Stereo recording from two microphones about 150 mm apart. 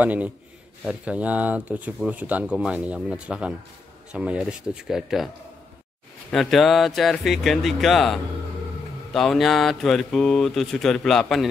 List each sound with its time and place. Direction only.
0.0 s speech: 10° right (ahead or behind)
6.3 s speech: centre (ahead or behind)